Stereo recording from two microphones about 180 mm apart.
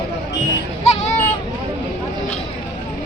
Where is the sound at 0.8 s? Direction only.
40° left (ahead or behind).